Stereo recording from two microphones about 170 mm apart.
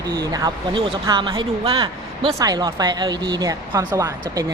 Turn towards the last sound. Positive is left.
turn(degrees=-20)  # may be behind; listen again after turning